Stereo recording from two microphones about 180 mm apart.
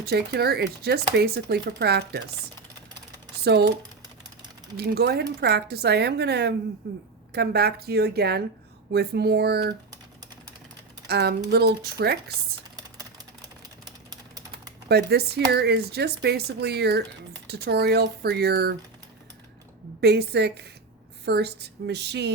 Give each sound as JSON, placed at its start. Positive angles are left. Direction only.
{"t": 0.0, "sound": "speech", "side_deg": -65}
{"t": 3.4, "sound": "speech", "side_deg": -65}
{"t": 4.8, "sound": "speech", "side_deg": -65}
{"t": 11.1, "sound": "speech", "side_deg": -65}
{"t": 14.8, "sound": "speech", "side_deg": -65}
{"t": 20.0, "sound": "a woman's voice", "side_deg": -65}